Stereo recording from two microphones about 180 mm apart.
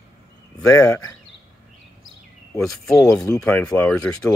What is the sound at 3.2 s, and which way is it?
Speech, 20° left (ahead or behind).